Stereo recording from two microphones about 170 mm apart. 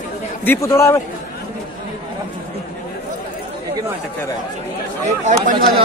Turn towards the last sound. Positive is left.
turn(degrees=-50)  # may be behind; listen again after turning